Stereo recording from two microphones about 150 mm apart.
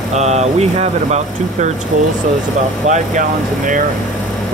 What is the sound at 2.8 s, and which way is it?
Speech, 50° right (ahead or behind).